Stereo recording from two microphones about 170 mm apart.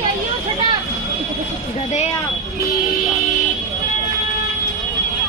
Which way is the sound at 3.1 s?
Centre (ahead or behind).